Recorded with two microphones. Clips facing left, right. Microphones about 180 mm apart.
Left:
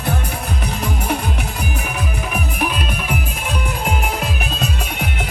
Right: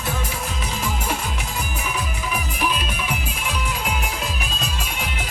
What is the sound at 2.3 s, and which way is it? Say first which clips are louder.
Music: left 1 dB; 55° left (ahead or behind).